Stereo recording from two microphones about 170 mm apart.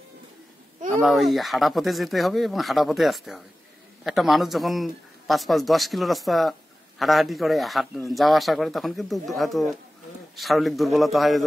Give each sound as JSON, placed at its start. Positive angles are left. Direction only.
{"t": 1.0, "sound": "speech", "side_deg": 0}